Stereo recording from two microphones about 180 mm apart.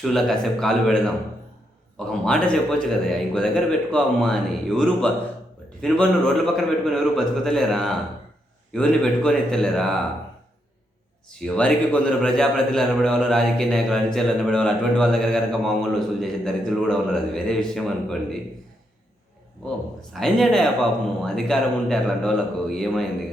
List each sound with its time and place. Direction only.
0.0 s a man's voice: centre (ahead or behind)
11.3 s a man's voice: 5° left (ahead or behind)
19.6 s a man's voice: centre (ahead or behind)